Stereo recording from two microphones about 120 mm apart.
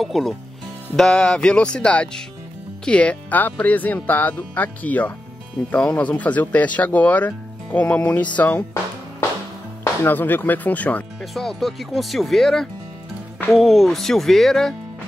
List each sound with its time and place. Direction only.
0.0 s speech: centre (ahead or behind); by 8.6 s 15° left (ahead or behind)
10.0 s speech: 15° left (ahead or behind)
11.3 s speech: centre (ahead or behind)